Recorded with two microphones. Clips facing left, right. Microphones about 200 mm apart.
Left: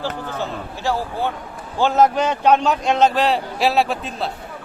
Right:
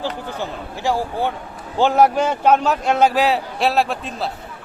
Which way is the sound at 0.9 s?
15° right (ahead or behind).